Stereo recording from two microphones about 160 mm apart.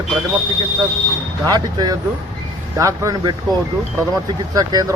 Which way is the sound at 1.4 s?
25° right (ahead or behind).